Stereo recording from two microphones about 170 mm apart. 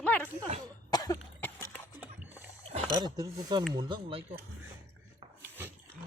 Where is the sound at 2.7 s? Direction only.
25° right (ahead or behind).